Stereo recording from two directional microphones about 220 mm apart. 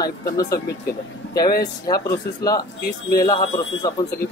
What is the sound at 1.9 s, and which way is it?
A man's voice, 15° left (ahead or behind).